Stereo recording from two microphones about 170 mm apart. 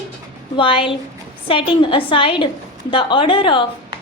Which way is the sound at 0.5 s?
30° left (ahead or behind).